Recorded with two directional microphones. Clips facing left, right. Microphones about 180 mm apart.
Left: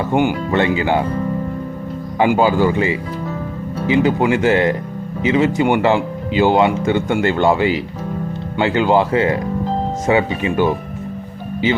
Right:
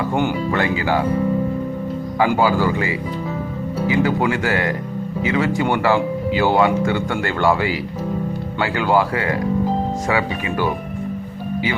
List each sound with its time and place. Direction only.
0.1 s speech: 15° left (ahead or behind)
2.1 s speech: 20° left (ahead or behind)